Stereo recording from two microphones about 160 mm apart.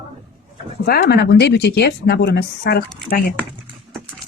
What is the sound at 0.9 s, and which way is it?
Speech, 75° left (ahead or behind).